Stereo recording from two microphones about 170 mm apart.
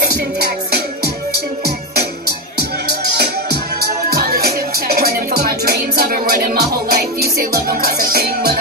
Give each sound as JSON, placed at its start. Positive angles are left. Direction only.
{"t": 3.8, "sound": "music", "side_deg": -60}